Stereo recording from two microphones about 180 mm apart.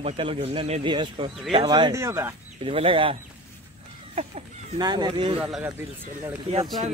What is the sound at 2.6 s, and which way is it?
Speech, 30° right (ahead or behind).